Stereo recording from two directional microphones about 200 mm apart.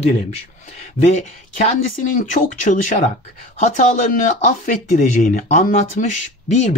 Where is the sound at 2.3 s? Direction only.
40° left (ahead or behind).